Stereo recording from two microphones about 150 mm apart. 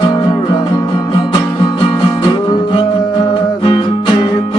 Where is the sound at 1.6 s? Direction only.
30° left (ahead or behind).